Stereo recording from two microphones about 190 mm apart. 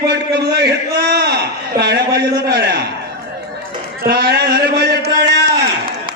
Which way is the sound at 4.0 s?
55° right (ahead or behind).